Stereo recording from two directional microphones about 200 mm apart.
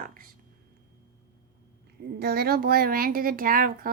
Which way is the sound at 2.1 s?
50° right (ahead or behind).